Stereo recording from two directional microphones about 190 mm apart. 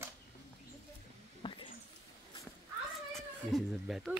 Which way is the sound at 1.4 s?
25° left (ahead or behind).